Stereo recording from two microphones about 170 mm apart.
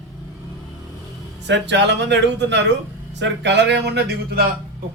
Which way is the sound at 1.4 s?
90° right.